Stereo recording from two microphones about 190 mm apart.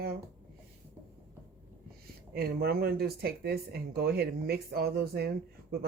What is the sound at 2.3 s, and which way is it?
Speech, 55° right (ahead or behind).